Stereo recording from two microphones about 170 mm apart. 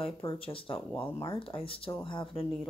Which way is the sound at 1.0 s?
20° left (ahead or behind).